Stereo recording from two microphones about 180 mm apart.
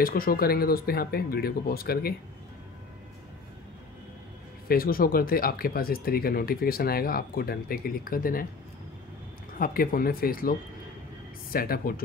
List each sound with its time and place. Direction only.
0.0 s speech: 55° left (ahead or behind)
4.6 s speech: 55° left (ahead or behind)
9.6 s speech: 55° left (ahead or behind)
11.5 s speech: 55° left (ahead or behind)